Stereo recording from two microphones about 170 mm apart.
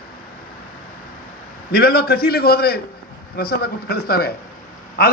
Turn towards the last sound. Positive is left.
turn(degrees=65)  # may be behind; listen again after turning